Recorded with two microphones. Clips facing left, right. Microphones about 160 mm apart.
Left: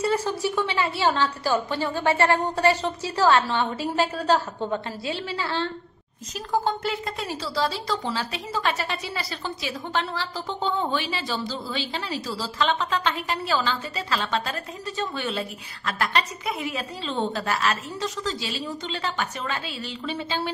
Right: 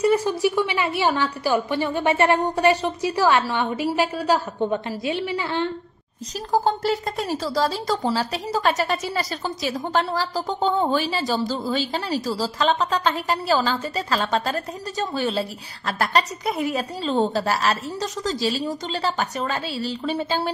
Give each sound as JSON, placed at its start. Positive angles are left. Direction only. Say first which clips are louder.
{"t": 0.0, "sound": "a woman's voice", "louder": "right 5 dB", "side_deg": -15}
{"t": 6.5, "sound": "speech", "louder": "right 4 dB", "side_deg": -40}